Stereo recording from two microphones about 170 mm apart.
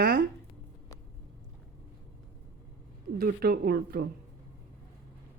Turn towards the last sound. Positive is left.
turn(degrees=-65)  # may be behind; listen again after turning